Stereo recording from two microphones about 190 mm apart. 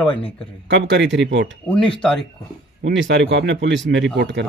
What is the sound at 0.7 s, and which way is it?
Speech, 70° right (ahead or behind).